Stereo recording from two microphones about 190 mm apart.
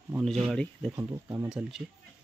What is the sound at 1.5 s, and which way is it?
Speech, centre (ahead or behind).